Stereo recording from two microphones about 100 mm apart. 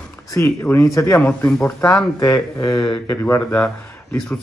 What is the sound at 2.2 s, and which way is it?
Speech, 30° left (ahead or behind).